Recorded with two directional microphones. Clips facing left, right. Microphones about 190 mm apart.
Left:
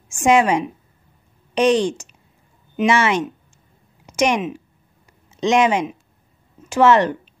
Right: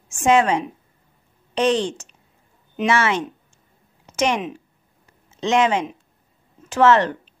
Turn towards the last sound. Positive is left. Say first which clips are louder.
# left 1 dB
turn(degrees=15)  # may be behind; listen again after turning